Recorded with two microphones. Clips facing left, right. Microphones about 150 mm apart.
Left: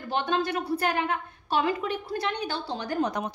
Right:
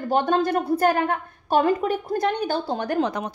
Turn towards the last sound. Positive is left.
turn(degrees=-65)  # may be behind; listen again after turning